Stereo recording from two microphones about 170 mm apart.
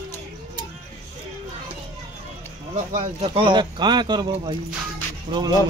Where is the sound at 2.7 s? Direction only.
40° right (ahead or behind).